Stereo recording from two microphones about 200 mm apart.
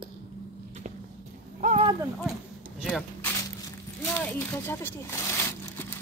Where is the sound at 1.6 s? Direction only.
35° right (ahead or behind).